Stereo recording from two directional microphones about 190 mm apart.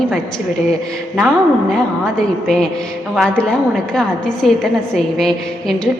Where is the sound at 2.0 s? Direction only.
5° left (ahead or behind).